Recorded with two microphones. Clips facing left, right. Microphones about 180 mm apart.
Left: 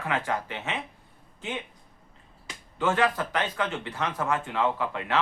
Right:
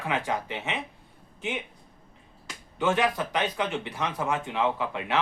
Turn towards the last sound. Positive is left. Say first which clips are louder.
# even
turn(degrees=-20)  # may be behind; listen again after turning